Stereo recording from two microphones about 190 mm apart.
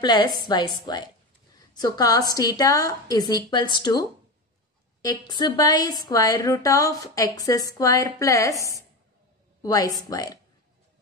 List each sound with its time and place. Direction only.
0.0 s a woman's voice: 20° left (ahead or behind)
5.0 s a woman's voice: 20° left (ahead or behind)
9.6 s a woman's voice: 20° left (ahead or behind)